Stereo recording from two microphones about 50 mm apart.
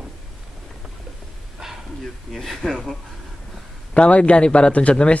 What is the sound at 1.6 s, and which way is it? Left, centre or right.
Bow-wow, centre.